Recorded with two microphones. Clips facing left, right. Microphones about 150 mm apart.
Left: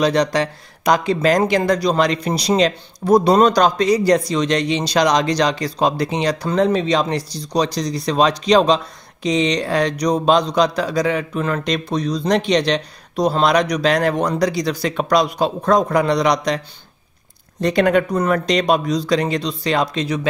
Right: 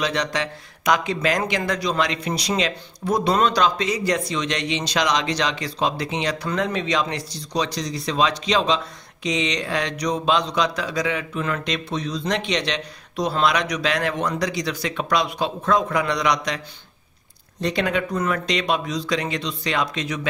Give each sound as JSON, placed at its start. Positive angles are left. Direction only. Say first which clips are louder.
{"t": 0.0, "sound": "speech", "louder": "left 7 dB", "side_deg": 35}
{"t": 17.6, "sound": "speech", "louder": "left 7 dB", "side_deg": 50}